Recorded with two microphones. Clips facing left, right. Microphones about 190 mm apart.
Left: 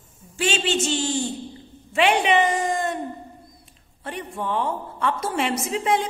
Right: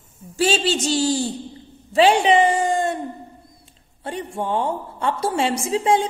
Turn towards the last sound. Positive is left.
turn(degrees=-30)  # may be behind; listen again after turning